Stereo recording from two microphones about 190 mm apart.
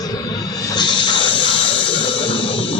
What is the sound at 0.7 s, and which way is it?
Music, 25° left (ahead or behind).